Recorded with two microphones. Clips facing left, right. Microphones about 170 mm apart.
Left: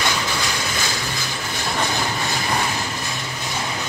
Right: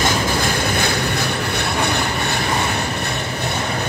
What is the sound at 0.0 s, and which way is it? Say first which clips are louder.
Vehicle: right 5 dB; 50° right (ahead or behind).